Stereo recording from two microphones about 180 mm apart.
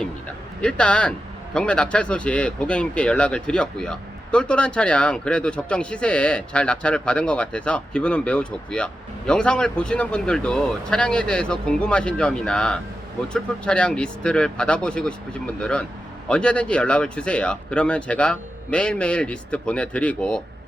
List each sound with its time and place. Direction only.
0.6 s speech: 5° left (ahead or behind)